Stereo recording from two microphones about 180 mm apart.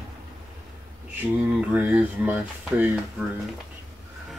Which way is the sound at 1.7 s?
10° right (ahead or behind).